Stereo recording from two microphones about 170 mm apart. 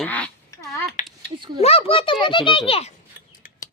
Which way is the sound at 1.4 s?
30° right (ahead or behind).